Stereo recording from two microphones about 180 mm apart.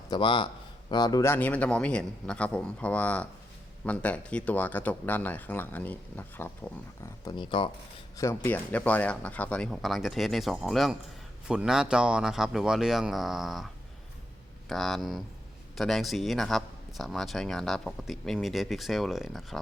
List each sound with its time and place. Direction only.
0.1 s speech: 25° left (ahead or behind); by 6.5 s 10° left (ahead or behind)
7.0 s speech: 25° left (ahead or behind)
8.1 s speech: 15° left (ahead or behind); by 13.7 s centre (ahead or behind)
14.7 s speech: centre (ahead or behind)